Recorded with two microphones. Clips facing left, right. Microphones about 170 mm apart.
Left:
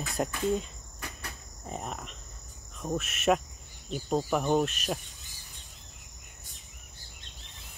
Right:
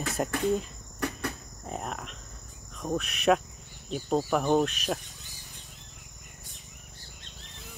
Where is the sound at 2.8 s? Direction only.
Centre (ahead or behind).